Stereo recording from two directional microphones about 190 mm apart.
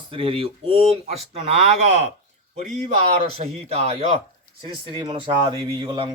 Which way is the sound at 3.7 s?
35° right (ahead or behind).